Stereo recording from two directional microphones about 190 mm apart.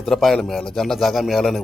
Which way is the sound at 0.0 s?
Centre (ahead or behind).